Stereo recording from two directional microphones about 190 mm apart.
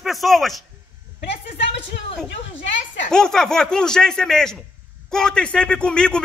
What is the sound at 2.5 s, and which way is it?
Speech, 70° left (ahead or behind).